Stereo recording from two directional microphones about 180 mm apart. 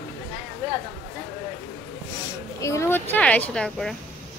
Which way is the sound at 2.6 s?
15° left (ahead or behind).